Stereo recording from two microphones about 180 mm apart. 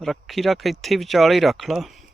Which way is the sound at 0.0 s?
Centre (ahead or behind).